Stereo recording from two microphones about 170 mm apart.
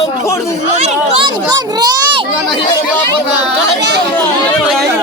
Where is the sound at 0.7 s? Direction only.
40° right (ahead or behind).